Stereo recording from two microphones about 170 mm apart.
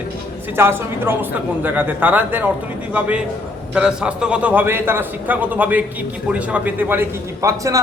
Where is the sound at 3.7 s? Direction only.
5° right (ahead or behind).